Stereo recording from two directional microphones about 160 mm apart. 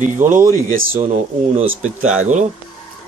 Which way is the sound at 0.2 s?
50° right (ahead or behind).